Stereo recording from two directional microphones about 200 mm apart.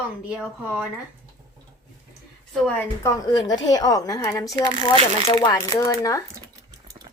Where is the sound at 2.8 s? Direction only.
15° left (ahead or behind).